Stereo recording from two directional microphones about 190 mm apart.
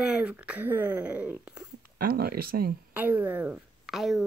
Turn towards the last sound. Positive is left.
turn(degrees=0)  # may be behind; listen again after turning